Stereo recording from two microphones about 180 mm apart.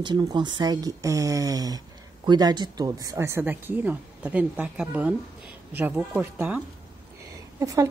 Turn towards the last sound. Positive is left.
turn(degrees=-15)  # may be behind; listen again after turning